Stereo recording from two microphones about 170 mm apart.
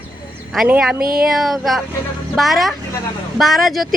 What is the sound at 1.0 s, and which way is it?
Speech, 60° right (ahead or behind).